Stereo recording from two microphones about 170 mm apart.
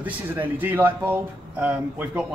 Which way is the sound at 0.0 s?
10° right (ahead or behind).